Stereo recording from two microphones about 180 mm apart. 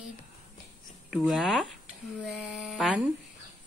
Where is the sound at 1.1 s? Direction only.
5° right (ahead or behind).